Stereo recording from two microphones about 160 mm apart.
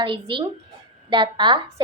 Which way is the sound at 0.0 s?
30° right (ahead or behind).